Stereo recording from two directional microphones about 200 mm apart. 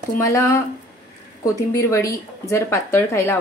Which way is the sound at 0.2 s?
15° left (ahead or behind).